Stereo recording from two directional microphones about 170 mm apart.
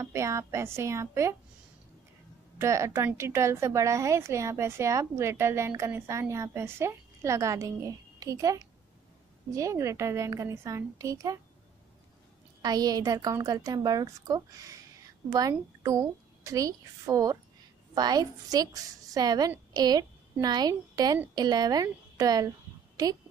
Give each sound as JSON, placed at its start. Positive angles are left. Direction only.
{"t": 0.0, "sound": "a woman's voice", "side_deg": -15}
{"t": 2.6, "sound": "a woman's voice", "side_deg": -15}
{"t": 12.6, "sound": "a woman's voice", "side_deg": -20}